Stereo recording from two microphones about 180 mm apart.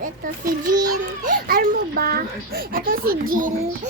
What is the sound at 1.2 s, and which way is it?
A child's voice, 50° right (ahead or behind).